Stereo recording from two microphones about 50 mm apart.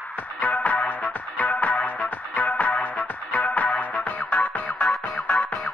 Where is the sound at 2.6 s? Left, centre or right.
Left.